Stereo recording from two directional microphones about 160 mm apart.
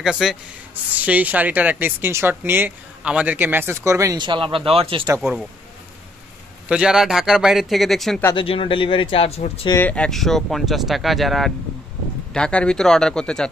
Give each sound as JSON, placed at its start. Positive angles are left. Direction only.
{"t": 0.0, "sound": "speech", "side_deg": -5}
{"t": 5.2, "sound": "speech", "side_deg": -5}
{"t": 6.7, "sound": "speech", "side_deg": -5}
{"t": 8.4, "sound": "speech", "side_deg": 35}
{"t": 9.8, "sound": "speech", "side_deg": 10}